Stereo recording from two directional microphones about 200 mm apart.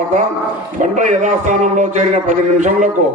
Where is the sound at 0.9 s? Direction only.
35° right (ahead or behind).